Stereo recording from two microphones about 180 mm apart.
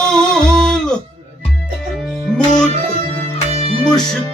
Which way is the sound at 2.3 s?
5° left (ahead or behind).